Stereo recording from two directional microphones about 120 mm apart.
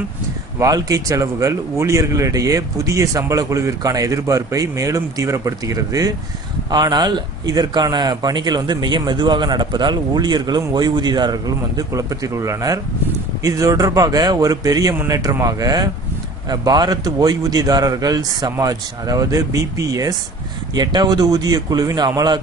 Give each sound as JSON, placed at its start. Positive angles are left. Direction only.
{"t": 0.6, "sound": "speech", "side_deg": -30}